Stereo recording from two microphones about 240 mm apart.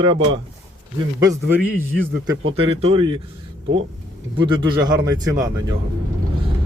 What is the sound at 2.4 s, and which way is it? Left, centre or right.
Speech, right.